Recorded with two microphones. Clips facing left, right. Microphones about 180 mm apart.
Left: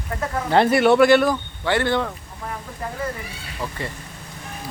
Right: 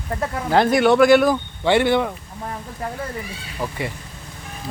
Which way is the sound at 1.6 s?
15° right (ahead or behind).